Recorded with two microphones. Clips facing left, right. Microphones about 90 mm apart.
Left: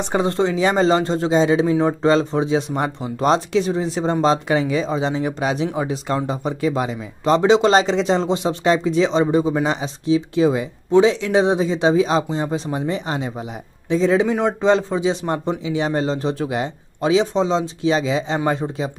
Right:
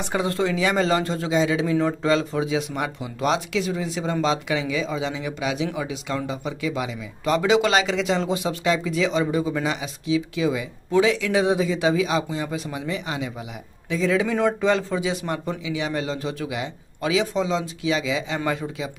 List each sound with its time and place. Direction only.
0.0 s speech: 30° left (ahead or behind)
10.9 s speech: 25° left (ahead or behind)